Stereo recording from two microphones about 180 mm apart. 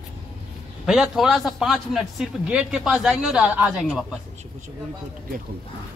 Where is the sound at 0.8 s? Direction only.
Centre (ahead or behind).